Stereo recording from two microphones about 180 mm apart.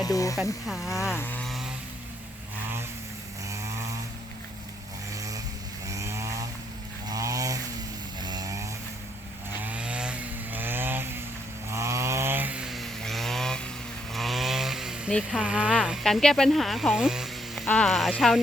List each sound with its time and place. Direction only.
0.0 s speech: 20° left (ahead or behind)
0.7 s speech: centre (ahead or behind)
1.1 s chainsaw: 10° left (ahead or behind)
3.4 s vehicle: 15° right (ahead or behind)
5.1 s vehicle: 20° right (ahead or behind)
5.8 s chainsaw: 15° right (ahead or behind)
7.1 s a sound: 20° right (ahead or behind)
8.2 s vehicle: 20° right (ahead or behind)
9.5 s chainsaw: 10° right (ahead or behind)
15.1 s speech: 5° right (ahead or behind)